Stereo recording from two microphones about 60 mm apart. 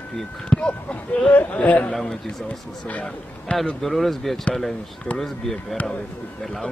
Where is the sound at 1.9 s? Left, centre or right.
Centre.